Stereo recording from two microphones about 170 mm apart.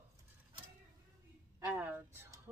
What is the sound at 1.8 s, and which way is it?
Speech, 10° right (ahead or behind).